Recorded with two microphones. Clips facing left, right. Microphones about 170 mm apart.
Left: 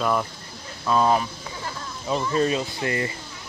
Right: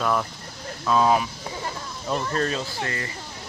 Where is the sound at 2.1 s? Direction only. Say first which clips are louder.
Left 3 dB; 10° left (ahead or behind).